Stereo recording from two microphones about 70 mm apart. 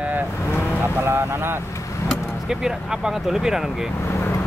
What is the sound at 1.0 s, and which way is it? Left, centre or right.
Speech, right.